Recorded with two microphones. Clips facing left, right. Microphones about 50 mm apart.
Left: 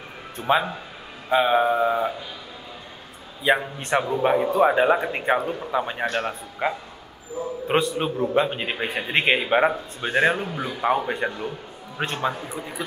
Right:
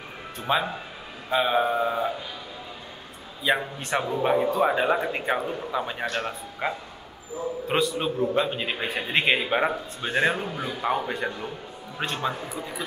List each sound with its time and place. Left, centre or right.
0.4 s a man's voice: centre
3.4 s a man's voice: centre
8.4 s a man's voice: centre